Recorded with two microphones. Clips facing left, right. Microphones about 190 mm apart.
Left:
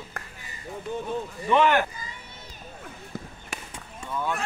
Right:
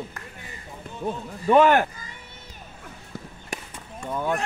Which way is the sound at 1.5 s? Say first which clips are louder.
Right 4 dB; 45° right (ahead or behind).